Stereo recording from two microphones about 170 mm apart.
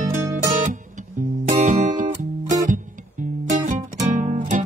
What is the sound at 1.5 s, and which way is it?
Music, 45° right (ahead or behind).